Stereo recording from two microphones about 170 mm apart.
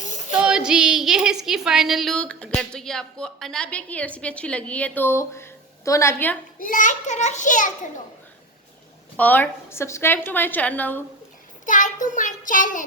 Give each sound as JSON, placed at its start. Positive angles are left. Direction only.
{"t": 0.3, "sound": "a woman's voice", "side_deg": -5}
{"t": 6.6, "sound": "child singing", "side_deg": 50}
{"t": 9.1, "sound": "a woman's voice", "side_deg": 10}
{"t": 11.6, "sound": "child singing", "side_deg": 50}